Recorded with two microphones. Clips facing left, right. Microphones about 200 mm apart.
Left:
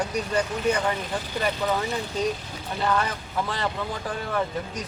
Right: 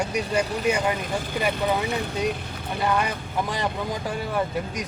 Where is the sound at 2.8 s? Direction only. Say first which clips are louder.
Right 1 dB; 15° right (ahead or behind).